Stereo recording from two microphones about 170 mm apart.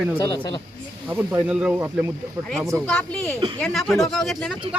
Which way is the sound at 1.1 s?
10° right (ahead or behind).